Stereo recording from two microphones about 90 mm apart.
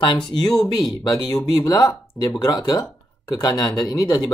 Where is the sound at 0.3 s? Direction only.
65° left (ahead or behind).